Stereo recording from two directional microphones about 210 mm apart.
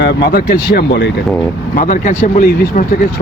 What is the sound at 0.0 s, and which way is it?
Speech, 55° left (ahead or behind).